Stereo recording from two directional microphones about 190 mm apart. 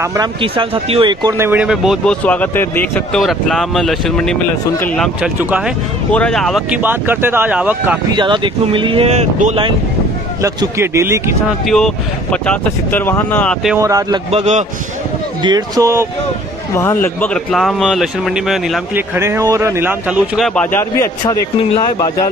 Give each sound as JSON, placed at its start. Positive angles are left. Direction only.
{"t": 0.0, "sound": "speech", "side_deg": -15}
{"t": 0.4, "sound": "speech", "side_deg": -30}
{"t": 1.4, "sound": "a man's voice", "side_deg": -10}
{"t": 5.4, "sound": "speech", "side_deg": -10}
{"t": 6.1, "sound": "speech", "side_deg": 5}
{"t": 8.2, "sound": "speech", "side_deg": -25}
{"t": 10.4, "sound": "speech", "side_deg": -15}
{"t": 11.6, "sound": "a man's voice", "side_deg": 5}
{"t": 13.8, "sound": "speech", "side_deg": -20}
{"t": 14.3, "sound": "a man's voice", "side_deg": -35}
{"t": 15.4, "sound": "speech", "side_deg": -20}
{"t": 16.7, "sound": "a man's voice", "side_deg": 15}
{"t": 19.1, "sound": "speech", "side_deg": -15}